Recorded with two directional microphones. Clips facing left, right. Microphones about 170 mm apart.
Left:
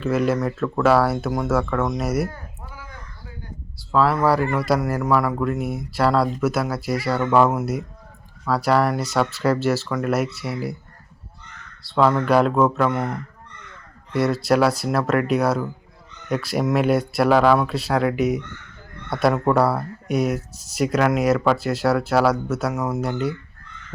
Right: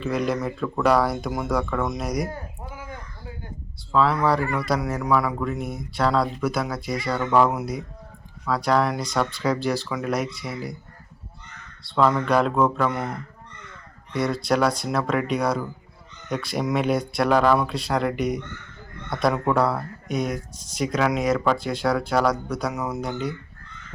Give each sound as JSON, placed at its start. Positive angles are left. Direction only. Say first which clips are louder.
{"t": 0.0, "sound": "speech", "louder": "left 4 dB", "side_deg": 5}
{"t": 2.3, "sound": "a sound", "louder": "right 4 dB", "side_deg": -20}
{"t": 3.9, "sound": "speech", "louder": "left 2 dB", "side_deg": 5}
{"t": 11.9, "sound": "speech", "louder": "left 3 dB", "side_deg": 5}
{"t": 14.1, "sound": "speech", "louder": "left 4 dB", "side_deg": 5}